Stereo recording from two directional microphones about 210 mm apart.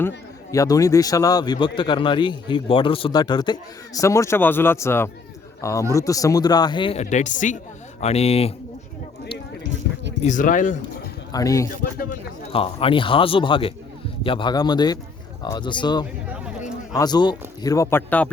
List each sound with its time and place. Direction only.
0.5 s speech: 15° left (ahead or behind)
10.2 s speech: 40° left (ahead or behind)
11.3 s a man's voice: 15° left (ahead or behind)
12.5 s a man's voice: 25° left (ahead or behind); by 18.3 s 10° left (ahead or behind)